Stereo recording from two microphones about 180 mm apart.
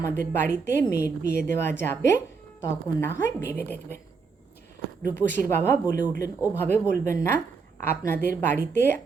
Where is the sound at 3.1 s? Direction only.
10° left (ahead or behind).